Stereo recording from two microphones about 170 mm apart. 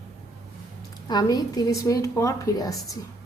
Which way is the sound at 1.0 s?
25° left (ahead or behind).